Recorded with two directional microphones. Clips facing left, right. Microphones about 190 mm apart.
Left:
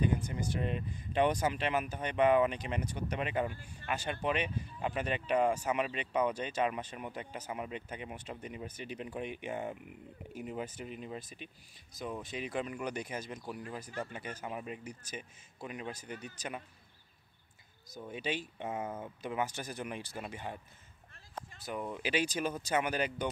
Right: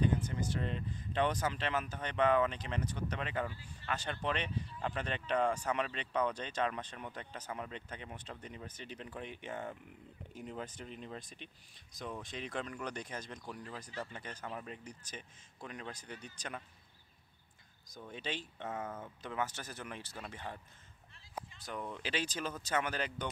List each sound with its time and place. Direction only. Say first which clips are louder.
0.0 s speech: left 1 dB; 10° left (ahead or behind)
17.9 s speech: left 5 dB; 10° left (ahead or behind)
21.6 s speech: left 5 dB; 10° left (ahead or behind)